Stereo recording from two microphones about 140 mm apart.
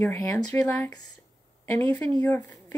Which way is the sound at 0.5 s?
15° left (ahead or behind).